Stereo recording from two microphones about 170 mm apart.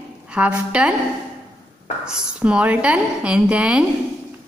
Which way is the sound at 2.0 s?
5° right (ahead or behind).